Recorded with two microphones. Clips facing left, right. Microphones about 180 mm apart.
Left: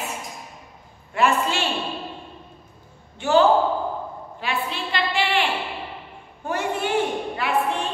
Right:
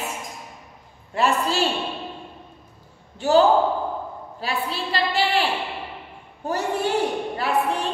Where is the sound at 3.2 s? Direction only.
35° right (ahead or behind).